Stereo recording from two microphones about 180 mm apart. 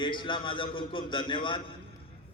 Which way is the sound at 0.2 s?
25° left (ahead or behind).